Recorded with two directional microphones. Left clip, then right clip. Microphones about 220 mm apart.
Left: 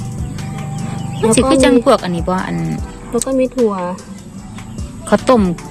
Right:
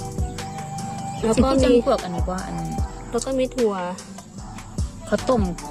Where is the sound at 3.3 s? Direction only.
15° right (ahead or behind).